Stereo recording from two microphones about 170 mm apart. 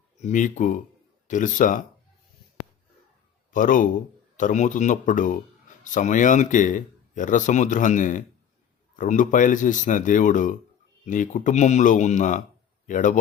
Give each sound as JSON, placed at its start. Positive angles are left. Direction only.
{"t": 0.2, "sound": "speech", "side_deg": 45}
{"t": 3.5, "sound": "speech", "side_deg": 50}